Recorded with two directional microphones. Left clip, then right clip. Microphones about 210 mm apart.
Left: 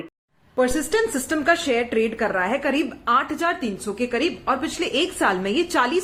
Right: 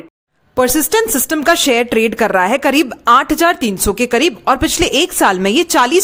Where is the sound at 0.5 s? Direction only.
50° right (ahead or behind).